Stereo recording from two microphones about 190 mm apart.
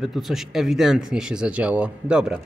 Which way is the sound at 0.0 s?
Centre (ahead or behind).